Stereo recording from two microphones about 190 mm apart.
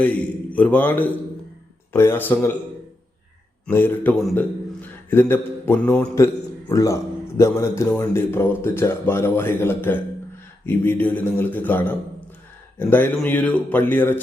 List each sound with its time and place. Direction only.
0.0 s speech: 10° left (ahead or behind)
3.7 s speech: 10° left (ahead or behind)
4.2 s a man's voice: centre (ahead or behind)
4.8 s a man's voice: 10° left (ahead or behind)